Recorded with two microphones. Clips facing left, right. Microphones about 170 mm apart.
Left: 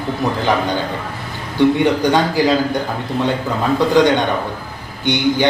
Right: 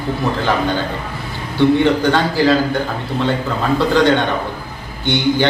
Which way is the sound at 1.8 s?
15° left (ahead or behind).